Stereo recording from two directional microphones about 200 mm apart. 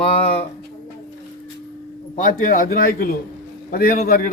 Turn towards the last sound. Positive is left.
turn(degrees=45)  # may be behind; listen again after turning